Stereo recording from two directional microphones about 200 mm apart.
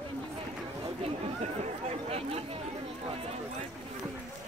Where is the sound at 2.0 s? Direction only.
30° right (ahead or behind).